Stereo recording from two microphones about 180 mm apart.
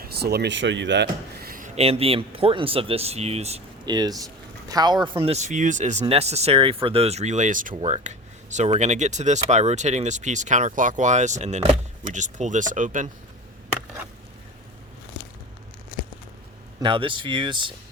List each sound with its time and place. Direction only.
0.0 s speech: 60° right (ahead or behind); by 3.6 s 35° right (ahead or behind)
3.8 s speech: 20° right (ahead or behind); by 7.8 s 45° right (ahead or behind)
7.8 s speech: 35° right (ahead or behind)
16.8 s speech: 30° right (ahead or behind)